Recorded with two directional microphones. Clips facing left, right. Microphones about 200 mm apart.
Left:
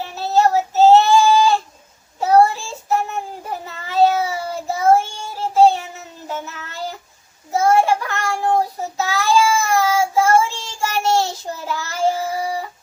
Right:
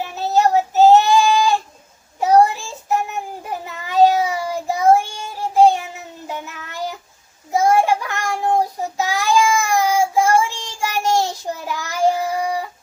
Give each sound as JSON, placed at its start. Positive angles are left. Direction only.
{"t": 0.0, "sound": "child singing", "side_deg": -15}